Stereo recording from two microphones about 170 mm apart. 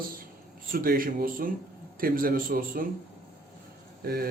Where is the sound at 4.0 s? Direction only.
65° right (ahead or behind).